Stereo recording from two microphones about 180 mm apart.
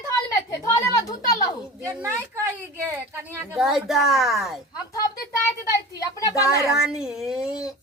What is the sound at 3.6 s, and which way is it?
Speech, centre (ahead or behind).